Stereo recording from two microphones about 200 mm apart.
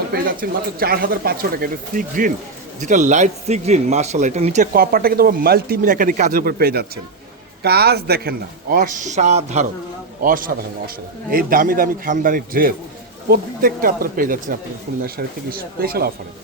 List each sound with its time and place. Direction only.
0.1 s a man's voice: 45° right (ahead or behind)